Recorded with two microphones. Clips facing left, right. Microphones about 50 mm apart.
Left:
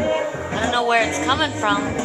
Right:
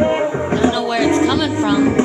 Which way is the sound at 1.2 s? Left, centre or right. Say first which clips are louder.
Right 4 dB; left.